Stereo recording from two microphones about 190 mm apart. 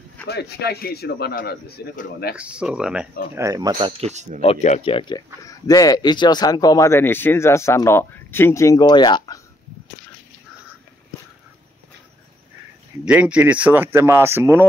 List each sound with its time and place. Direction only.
0.3 s a man's voice: 60° left (ahead or behind)
2.3 s speech: 5° right (ahead or behind)
3.3 s speech: 15° right (ahead or behind)
3.7 s speech: 30° right (ahead or behind)
4.4 s speech: 35° left (ahead or behind)
13.0 s speech: 5° right (ahead or behind)